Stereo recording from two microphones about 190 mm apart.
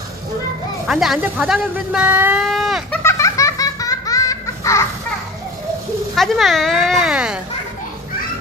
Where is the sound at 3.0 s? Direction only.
15° left (ahead or behind).